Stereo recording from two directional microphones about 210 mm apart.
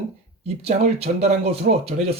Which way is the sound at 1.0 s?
30° right (ahead or behind).